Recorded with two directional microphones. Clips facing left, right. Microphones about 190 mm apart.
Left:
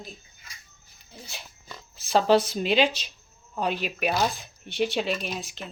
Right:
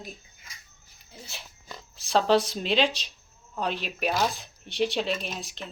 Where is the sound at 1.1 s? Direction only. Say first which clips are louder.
Left 1 dB; centre (ahead or behind).